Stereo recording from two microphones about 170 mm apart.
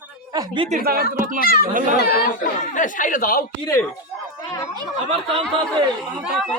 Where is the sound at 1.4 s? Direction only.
60° left (ahead or behind).